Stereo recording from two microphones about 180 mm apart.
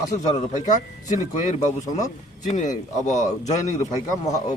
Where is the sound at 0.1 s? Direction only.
45° left (ahead or behind).